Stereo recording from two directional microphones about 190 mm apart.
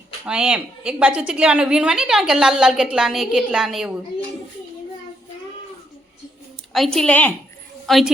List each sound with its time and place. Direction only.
0.3 s a woman's voice: 5° right (ahead or behind)
6.7 s a woman's voice: centre (ahead or behind)